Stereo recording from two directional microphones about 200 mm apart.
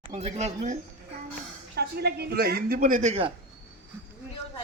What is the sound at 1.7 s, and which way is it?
Speech, 55° right (ahead or behind).